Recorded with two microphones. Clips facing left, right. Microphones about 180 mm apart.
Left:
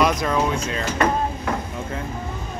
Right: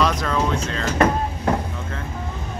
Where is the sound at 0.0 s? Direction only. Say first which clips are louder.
Left 1 dB; 10° left (ahead or behind).